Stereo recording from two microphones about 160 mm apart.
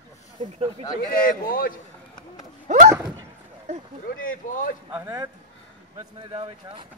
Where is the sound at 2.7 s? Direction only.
50° right (ahead or behind).